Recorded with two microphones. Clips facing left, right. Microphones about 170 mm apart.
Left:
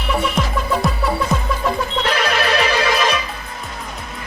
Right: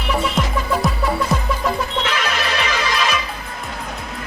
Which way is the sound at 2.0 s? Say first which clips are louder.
Left 4 dB; 55° left (ahead or behind).